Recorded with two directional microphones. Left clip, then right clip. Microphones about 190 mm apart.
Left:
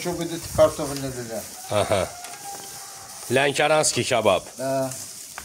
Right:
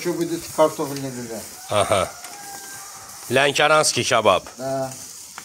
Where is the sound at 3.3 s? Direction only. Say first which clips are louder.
Right 3 dB; 5° left (ahead or behind).